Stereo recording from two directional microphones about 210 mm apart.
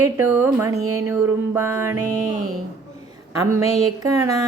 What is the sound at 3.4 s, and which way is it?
Mantra, 15° right (ahead or behind).